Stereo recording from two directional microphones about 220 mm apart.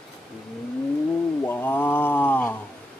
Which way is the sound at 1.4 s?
10° left (ahead or behind).